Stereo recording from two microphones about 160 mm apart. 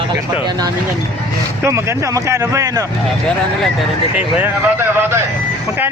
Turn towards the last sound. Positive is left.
turn(degrees=-15)  # may be behind; listen again after turning